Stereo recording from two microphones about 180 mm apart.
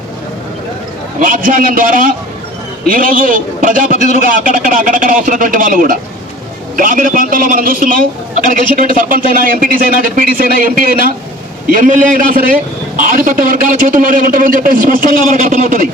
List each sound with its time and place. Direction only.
1.2 s a man's voice: 50° right (ahead or behind)